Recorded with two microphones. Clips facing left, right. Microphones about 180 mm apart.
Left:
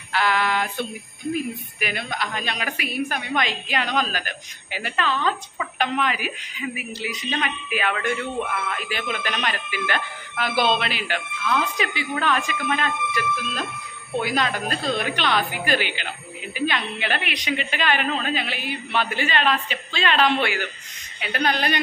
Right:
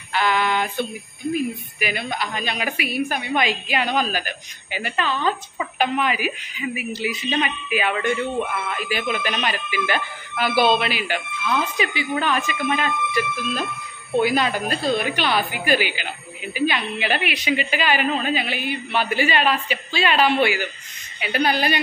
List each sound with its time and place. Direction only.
0.1 s female singing: centre (ahead or behind)
1.3 s a woman's voice: 5° right (ahead or behind)